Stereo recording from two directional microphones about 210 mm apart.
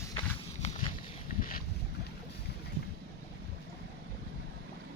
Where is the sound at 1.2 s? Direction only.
40° left (ahead or behind).